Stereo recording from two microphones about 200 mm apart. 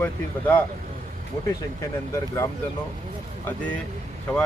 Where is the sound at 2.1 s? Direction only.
15° left (ahead or behind).